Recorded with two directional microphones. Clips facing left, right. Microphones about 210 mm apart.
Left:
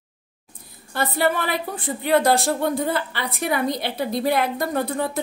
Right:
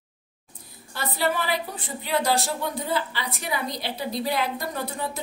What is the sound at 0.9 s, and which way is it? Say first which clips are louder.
A woman's voice: left 5 dB; 55° left (ahead or behind).